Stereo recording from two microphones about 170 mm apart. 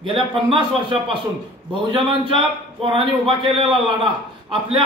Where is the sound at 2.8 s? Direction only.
30° right (ahead or behind).